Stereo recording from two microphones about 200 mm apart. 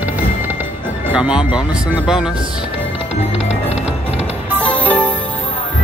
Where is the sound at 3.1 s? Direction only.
30° left (ahead or behind).